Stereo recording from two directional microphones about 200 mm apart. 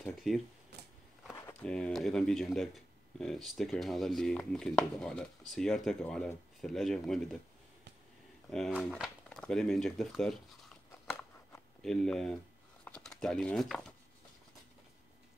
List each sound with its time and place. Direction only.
0.0 s speech: centre (ahead or behind)
0.7 s a sound: 55° right (ahead or behind)
1.4 s speech: 10° left (ahead or behind)
8.5 s speech: centre (ahead or behind)
11.1 s a sound: 5° left (ahead or behind)
12.8 s speech: 5° left (ahead or behind)